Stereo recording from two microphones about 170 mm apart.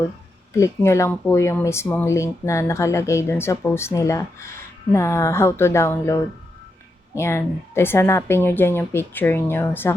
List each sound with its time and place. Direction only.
0.5 s speech: 15° left (ahead or behind)
7.2 s speech: 15° left (ahead or behind)